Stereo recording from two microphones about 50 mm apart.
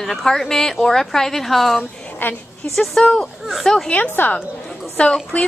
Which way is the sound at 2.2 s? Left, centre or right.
Left.